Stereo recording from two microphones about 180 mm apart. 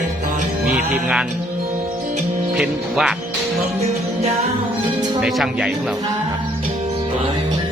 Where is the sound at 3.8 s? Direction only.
35° right (ahead or behind).